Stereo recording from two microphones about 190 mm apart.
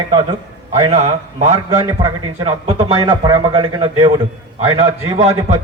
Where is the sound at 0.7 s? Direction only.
35° right (ahead or behind).